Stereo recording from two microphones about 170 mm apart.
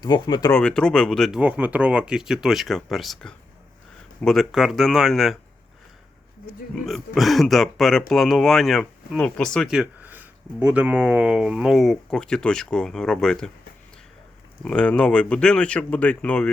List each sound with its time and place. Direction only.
0.0 s speech: 25° left (ahead or behind)
0.5 s speech: 5° left (ahead or behind)
1.4 s speech: 10° right (ahead or behind)
6.8 s speech: centre (ahead or behind)
14.6 s speech: 5° left (ahead or behind)